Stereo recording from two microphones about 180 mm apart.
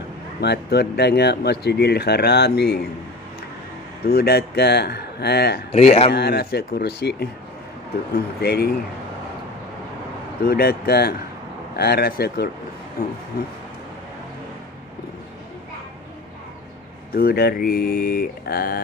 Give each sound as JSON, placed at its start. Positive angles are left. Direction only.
{"t": 0.4, "sound": "speech", "side_deg": 65}
{"t": 4.0, "sound": "speech", "side_deg": 60}
{"t": 5.7, "sound": "speech", "side_deg": 35}
{"t": 6.1, "sound": "speech", "side_deg": 65}
{"t": 8.4, "sound": "speech", "side_deg": 60}
{"t": 10.4, "sound": "speech", "side_deg": 60}
{"t": 17.1, "sound": "speech", "side_deg": 60}